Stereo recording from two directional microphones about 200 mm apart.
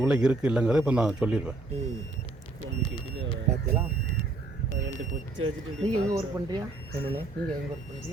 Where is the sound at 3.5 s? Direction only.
35° right (ahead or behind).